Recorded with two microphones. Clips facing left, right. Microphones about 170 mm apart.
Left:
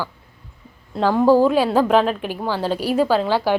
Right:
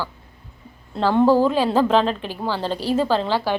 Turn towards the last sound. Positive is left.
turn(degrees=10)  # may be behind; listen again after turning